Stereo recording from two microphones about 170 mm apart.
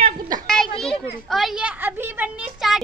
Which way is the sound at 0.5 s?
5° left (ahead or behind).